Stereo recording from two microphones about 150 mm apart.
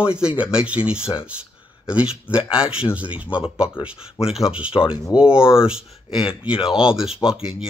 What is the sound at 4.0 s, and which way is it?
Speech, 40° left (ahead or behind).